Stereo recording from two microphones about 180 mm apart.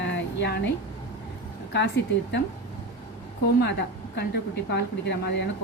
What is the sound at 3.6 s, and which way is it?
A woman's voice, 70° left (ahead or behind).